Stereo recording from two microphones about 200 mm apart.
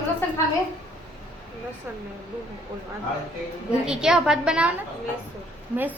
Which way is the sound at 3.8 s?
5° right (ahead or behind).